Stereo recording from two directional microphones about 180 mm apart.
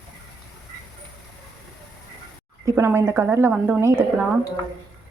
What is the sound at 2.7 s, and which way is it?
A woman's voice, 15° right (ahead or behind).